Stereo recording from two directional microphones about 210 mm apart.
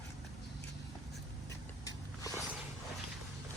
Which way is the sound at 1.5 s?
15° left (ahead or behind).